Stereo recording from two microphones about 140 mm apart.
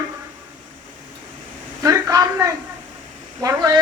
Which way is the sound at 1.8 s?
25° right (ahead or behind).